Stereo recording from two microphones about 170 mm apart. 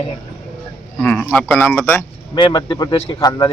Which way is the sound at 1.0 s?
10° left (ahead or behind).